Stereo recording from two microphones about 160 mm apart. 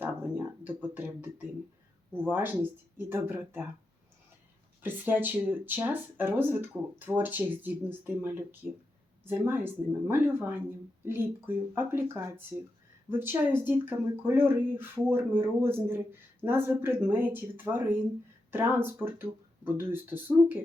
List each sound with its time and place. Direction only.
0.0 s a sound: 10° right (ahead or behind)
2.1 s speech: 15° right (ahead or behind)
4.8 s speech: 10° right (ahead or behind)